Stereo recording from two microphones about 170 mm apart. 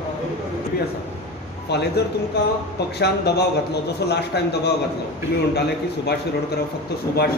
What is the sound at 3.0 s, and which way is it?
A man's voice, 75° left (ahead or behind).